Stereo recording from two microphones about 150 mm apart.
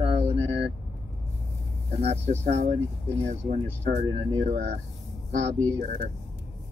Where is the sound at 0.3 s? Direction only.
40° right (ahead or behind).